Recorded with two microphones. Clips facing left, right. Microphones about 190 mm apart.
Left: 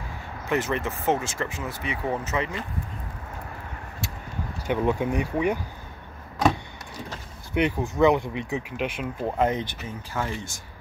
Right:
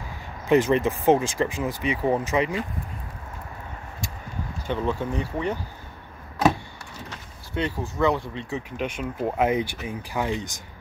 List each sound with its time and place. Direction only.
0.5 s speech: 15° right (ahead or behind)
4.6 s speech: 15° left (ahead or behind)
7.5 s speech: 15° left (ahead or behind)
8.7 s speech: 5° left (ahead or behind)
9.4 s speech: 10° right (ahead or behind)